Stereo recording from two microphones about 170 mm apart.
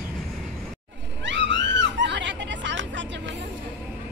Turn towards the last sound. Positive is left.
turn(degrees=-90)